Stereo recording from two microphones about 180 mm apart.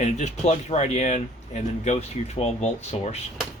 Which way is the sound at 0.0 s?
40° left (ahead or behind).